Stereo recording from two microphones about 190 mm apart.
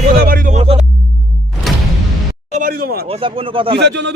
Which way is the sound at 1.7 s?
Centre (ahead or behind).